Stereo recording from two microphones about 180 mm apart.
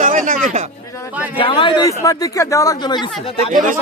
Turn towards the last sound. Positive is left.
turn(degrees=-45)  # may be behind; listen again after turning